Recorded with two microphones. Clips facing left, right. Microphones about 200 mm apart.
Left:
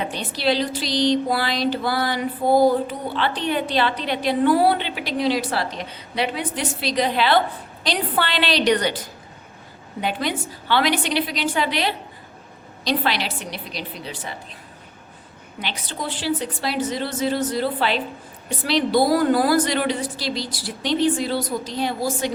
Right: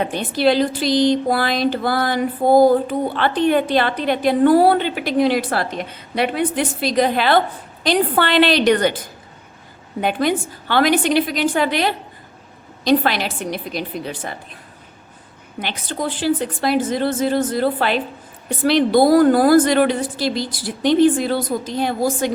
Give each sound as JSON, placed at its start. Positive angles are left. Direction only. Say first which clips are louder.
{"t": 0.0, "sound": "a woman's voice", "louder": "right 6 dB", "side_deg": -50}
{"t": 15.6, "sound": "a woman's voice", "louder": "right 5 dB", "side_deg": -50}